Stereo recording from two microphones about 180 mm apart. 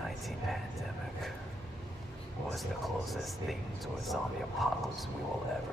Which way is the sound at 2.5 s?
Centre (ahead or behind).